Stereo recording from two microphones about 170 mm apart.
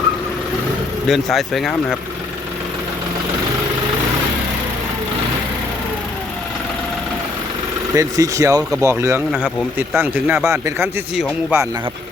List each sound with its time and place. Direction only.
1.0 s speech: centre (ahead or behind)
7.9 s a man's voice: 20° right (ahead or behind); by 11.7 s 5° right (ahead or behind)